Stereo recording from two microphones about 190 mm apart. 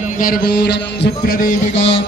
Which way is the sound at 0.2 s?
55° left (ahead or behind).